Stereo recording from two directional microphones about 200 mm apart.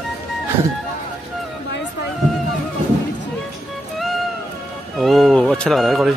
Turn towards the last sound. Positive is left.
turn(degrees=0)  # may be behind; listen again after turning